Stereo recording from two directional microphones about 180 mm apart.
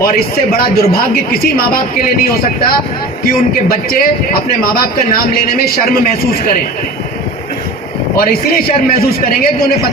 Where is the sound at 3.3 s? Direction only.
55° left (ahead or behind).